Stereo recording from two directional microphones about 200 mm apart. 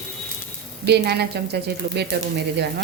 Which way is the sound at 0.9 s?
55° right (ahead or behind).